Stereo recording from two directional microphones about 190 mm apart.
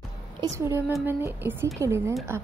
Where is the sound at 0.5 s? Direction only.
15° right (ahead or behind).